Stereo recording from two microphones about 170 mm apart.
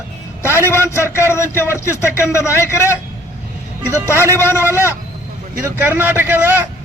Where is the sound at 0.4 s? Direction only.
15° left (ahead or behind).